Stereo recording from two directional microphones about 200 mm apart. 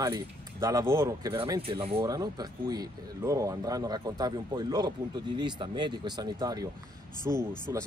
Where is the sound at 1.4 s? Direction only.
25° right (ahead or behind).